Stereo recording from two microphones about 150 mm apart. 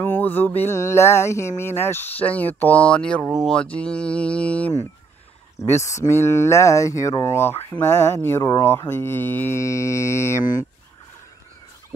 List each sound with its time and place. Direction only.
0.0 s speech: 15° left (ahead or behind)
5.7 s speech: 20° left (ahead or behind)